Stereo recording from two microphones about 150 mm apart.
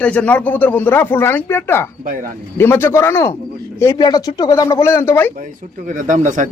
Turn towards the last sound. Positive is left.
turn(degrees=-55)  # may be behind; listen again after turning